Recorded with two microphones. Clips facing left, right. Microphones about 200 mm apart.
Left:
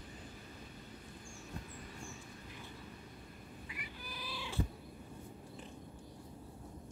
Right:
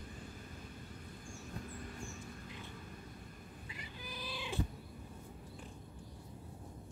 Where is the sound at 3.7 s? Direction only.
25° right (ahead or behind).